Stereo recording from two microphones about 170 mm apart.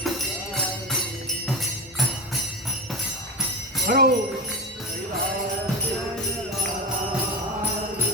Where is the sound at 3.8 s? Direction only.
60° right (ahead or behind).